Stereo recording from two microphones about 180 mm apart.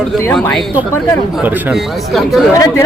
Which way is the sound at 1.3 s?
10° right (ahead or behind).